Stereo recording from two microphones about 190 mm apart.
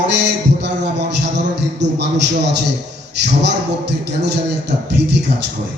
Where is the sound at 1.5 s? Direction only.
65° right (ahead or behind).